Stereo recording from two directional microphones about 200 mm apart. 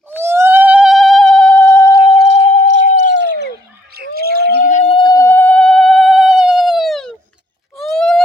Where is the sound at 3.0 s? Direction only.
60° right (ahead or behind).